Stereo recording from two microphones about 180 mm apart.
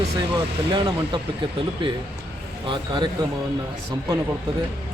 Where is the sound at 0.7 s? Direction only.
25° right (ahead or behind).